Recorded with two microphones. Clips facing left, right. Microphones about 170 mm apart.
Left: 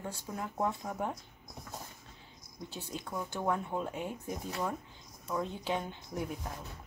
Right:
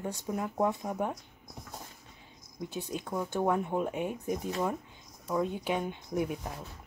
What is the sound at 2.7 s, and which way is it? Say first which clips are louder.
Speech: right 5 dB; 15° right (ahead or behind).